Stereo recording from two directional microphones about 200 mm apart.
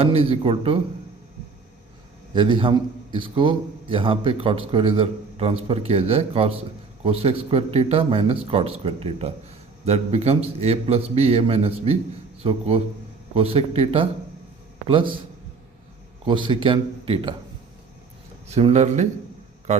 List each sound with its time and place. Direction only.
0.0 s a man's voice: 30° right (ahead or behind)
2.3 s a man's voice: 25° right (ahead or behind)
16.2 s a man's voice: 25° right (ahead or behind)
18.4 s a man's voice: 35° right (ahead or behind)